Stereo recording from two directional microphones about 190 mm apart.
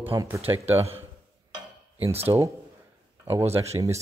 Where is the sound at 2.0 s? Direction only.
30° right (ahead or behind).